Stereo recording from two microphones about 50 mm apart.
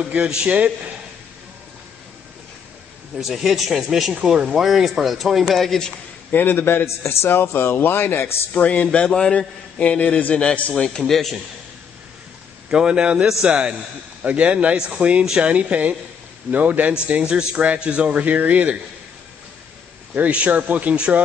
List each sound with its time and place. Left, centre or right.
0.0 s speech: centre
3.2 s a man's voice: centre
4.1 s a man's voice: centre
6.3 s speech: left
7.0 s speech: left
8.5 s a man's voice: left
9.1 s a man's voice: centre
10.8 s a man's voice: centre
12.6 s a man's voice: centre
20.2 s speech: right